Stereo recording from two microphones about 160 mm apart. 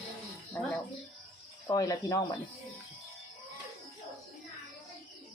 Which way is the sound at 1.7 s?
20° left (ahead or behind).